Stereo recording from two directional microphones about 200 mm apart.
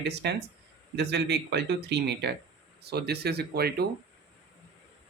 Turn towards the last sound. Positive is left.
turn(degrees=-55)  # may be behind; listen again after turning